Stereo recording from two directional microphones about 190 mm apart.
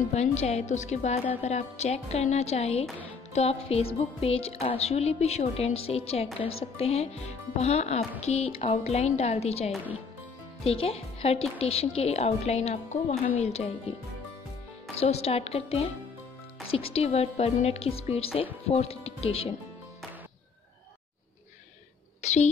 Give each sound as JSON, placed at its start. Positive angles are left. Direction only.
{"t": 0.1, "sound": "speech", "side_deg": 35}
{"t": 22.2, "sound": "a woman's voice", "side_deg": 35}